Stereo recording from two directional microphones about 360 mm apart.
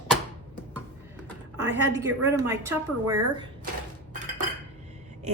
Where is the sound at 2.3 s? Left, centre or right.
Centre.